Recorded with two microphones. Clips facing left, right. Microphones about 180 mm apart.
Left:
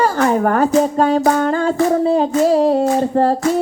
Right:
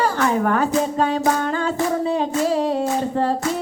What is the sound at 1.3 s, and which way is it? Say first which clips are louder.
Music: left 5 dB; 45° left (ahead or behind).